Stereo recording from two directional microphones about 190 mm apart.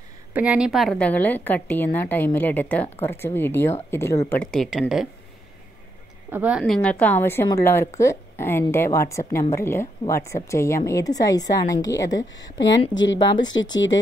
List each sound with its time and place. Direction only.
0.3 s a woman's voice: 5° right (ahead or behind)
6.3 s a woman's voice: 5° right (ahead or behind)
6.6 s a woman's voice: 5° left (ahead or behind)
12.9 s speech: 75° left (ahead or behind)